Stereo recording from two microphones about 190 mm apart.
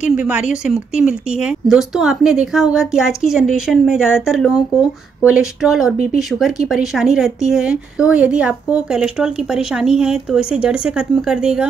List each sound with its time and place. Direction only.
0.0 s a woman's voice: 5° right (ahead or behind)